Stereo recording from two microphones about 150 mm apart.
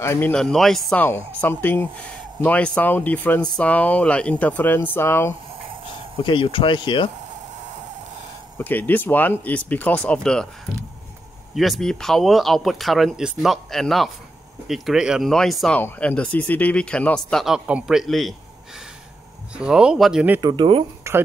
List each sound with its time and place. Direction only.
0.0 s speech: 20° left (ahead or behind)
0.3 s speech: 5° left (ahead or behind)
1.0 s speech: 15° left (ahead or behind)
6.2 s speech: 35° left (ahead or behind)
8.5 s speech: 10° left (ahead or behind)
11.5 s speech: centre (ahead or behind)
19.5 s speech: 5° right (ahead or behind)
20.3 s speech: 30° right (ahead or behind)
21.0 s a sound: 20° right (ahead or behind)